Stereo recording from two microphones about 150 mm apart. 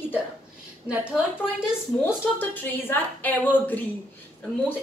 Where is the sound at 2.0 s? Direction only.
15° left (ahead or behind).